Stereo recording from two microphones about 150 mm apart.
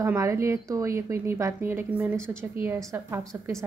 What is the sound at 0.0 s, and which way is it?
A woman's voice, 20° right (ahead or behind).